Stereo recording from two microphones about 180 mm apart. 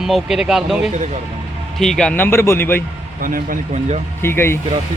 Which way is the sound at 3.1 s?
50° right (ahead or behind).